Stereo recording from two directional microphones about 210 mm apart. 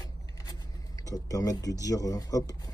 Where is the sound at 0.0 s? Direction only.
15° left (ahead or behind).